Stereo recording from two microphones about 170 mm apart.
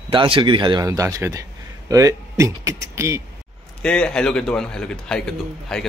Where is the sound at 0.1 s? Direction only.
30° right (ahead or behind).